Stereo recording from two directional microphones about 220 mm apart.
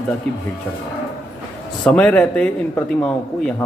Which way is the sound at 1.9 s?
5° left (ahead or behind).